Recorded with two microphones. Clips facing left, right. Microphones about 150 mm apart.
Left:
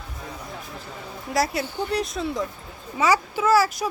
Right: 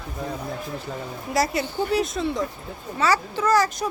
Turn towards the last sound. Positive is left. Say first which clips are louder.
# left 1 dB
turn(degrees=5)  # may be behind; listen again after turning